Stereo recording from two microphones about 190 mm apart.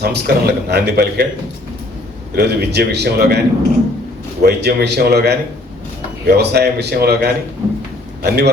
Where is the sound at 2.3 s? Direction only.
60° right (ahead or behind).